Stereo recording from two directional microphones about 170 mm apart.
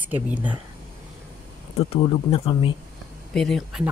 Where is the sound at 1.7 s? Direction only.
35° left (ahead or behind).